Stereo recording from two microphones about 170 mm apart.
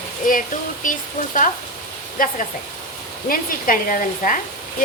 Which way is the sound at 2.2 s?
55° left (ahead or behind).